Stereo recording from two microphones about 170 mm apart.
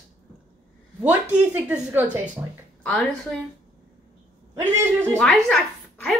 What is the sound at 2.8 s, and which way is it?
Speech, 5° left (ahead or behind).